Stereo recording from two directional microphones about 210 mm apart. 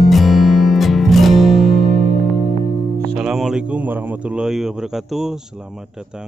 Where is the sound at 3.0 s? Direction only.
Centre (ahead or behind).